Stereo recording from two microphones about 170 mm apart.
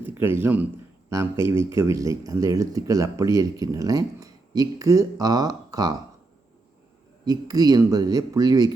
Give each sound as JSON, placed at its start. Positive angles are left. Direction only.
{"t": 0.0, "sound": "speech", "side_deg": -15}
{"t": 7.3, "sound": "speech", "side_deg": -20}